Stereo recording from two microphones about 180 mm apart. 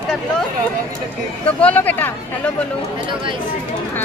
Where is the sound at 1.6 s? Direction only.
10° left (ahead or behind).